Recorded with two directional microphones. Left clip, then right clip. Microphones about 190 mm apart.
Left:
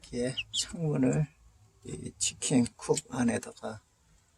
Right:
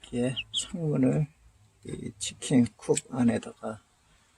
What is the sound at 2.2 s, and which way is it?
Speech, 10° right (ahead or behind).